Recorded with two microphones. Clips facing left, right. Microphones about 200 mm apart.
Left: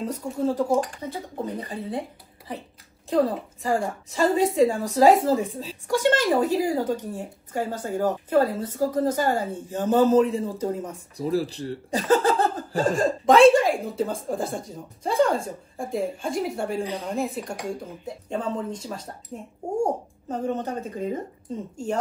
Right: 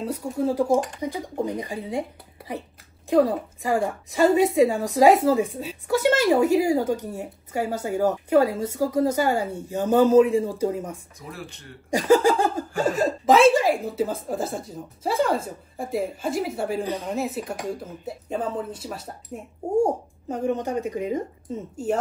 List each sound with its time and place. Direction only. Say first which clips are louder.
0.0 s a woman's voice: right 1 dB; 10° right (ahead or behind)
11.1 s speech: left 13 dB; 35° left (ahead or behind)
11.9 s a sound: right 3 dB; 10° right (ahead or behind)
12.8 s a woman's voice: even; 5° right (ahead or behind)